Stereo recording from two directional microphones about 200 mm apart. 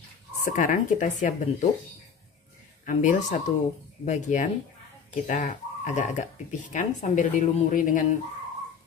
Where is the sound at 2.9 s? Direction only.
40° left (ahead or behind).